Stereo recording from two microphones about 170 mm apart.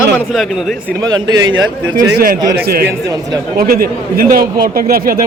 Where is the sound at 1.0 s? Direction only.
20° right (ahead or behind).